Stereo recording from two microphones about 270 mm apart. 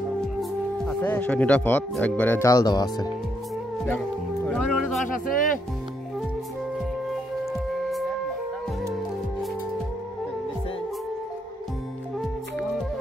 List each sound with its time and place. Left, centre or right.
0.4 s speech: centre
4.5 s speech: centre
5.0 s speech: left
7.1 s music: centre